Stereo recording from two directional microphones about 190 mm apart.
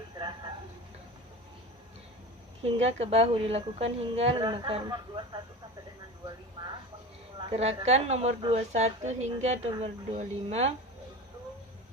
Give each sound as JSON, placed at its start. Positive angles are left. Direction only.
{"t": 0.2, "sound": "a sound", "side_deg": -25}
{"t": 2.6, "sound": "a woman's voice", "side_deg": -30}
{"t": 7.5, "sound": "a woman's voice", "side_deg": -35}